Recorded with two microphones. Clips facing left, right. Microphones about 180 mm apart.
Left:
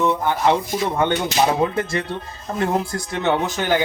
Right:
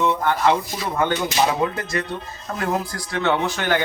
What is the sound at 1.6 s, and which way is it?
Speech, 25° left (ahead or behind).